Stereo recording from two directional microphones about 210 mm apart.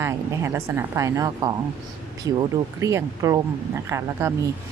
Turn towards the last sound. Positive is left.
turn(degrees=-15)  # may be behind; listen again after turning